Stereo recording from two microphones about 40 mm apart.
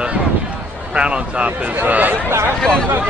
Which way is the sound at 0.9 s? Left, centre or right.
Right.